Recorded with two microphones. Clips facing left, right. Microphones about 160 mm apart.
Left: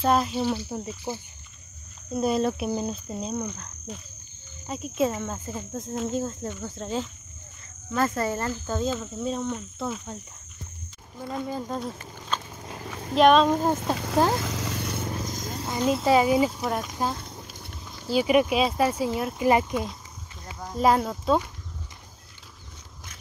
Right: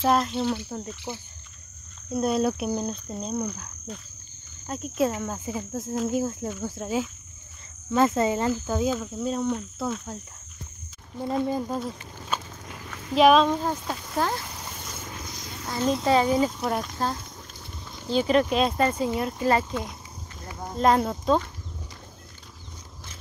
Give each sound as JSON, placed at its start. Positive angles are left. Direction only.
{"t": 0.0, "sound": "speech", "side_deg": 5}
{"t": 2.1, "sound": "speech", "side_deg": 0}
{"t": 4.6, "sound": "speech", "side_deg": 0}
{"t": 7.9, "sound": "speech", "side_deg": -20}
{"t": 8.5, "sound": "speech", "side_deg": -10}
{"t": 11.6, "sound": "speech", "side_deg": 0}
{"t": 12.6, "sound": "a sound", "side_deg": 35}
{"t": 13.1, "sound": "speech", "side_deg": 0}
{"t": 13.9, "sound": "speech", "side_deg": 90}
{"t": 14.4, "sound": "vehicle", "side_deg": 90}
{"t": 15.2, "sound": "a sound", "side_deg": 45}
{"t": 15.8, "sound": "a child's voice", "side_deg": 5}
{"t": 19.4, "sound": "a child's voice", "side_deg": 15}
{"t": 20.7, "sound": "speech", "side_deg": 5}